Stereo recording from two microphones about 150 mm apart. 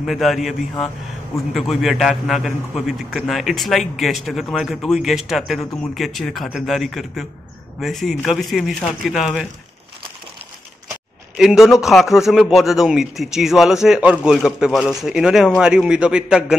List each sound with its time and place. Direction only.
0.0 s a man's voice: centre (ahead or behind)
11.3 s a man's voice: centre (ahead or behind)